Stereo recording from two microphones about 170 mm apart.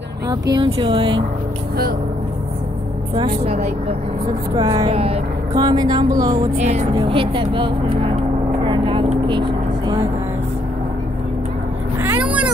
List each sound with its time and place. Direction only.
0.3 s speech: 25° right (ahead or behind)
3.2 s speech: 30° right (ahead or behind)
4.6 s speech: 25° right (ahead or behind)
5.5 s speech: 25° right (ahead or behind)
6.6 s speech: 40° right (ahead or behind)